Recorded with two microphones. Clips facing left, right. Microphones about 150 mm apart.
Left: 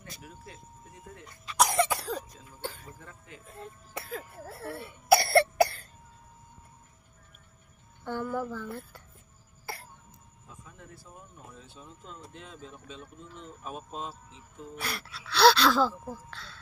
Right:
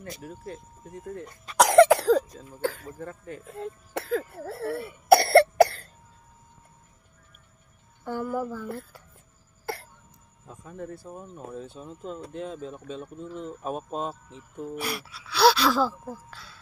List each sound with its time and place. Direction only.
0.2 s speech: 40° right (ahead or behind)
1.6 s cough: 90° right
3.0 s speech: 45° right (ahead or behind)
3.6 s speech: 80° right
5.0 s cough: 60° right (ahead or behind)
8.0 s speech: 5° right (ahead or behind)
10.4 s speech: 45° right (ahead or behind)
14.8 s speech: 5° right (ahead or behind)